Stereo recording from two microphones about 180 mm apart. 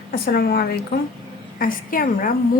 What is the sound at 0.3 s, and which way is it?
Speech, 60° left (ahead or behind).